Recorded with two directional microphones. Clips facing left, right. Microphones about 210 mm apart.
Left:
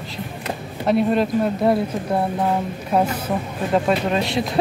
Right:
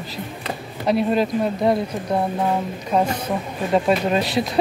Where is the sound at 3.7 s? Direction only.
Centre (ahead or behind).